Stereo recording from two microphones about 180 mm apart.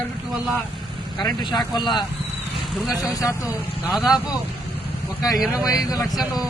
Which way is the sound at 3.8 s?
5° right (ahead or behind).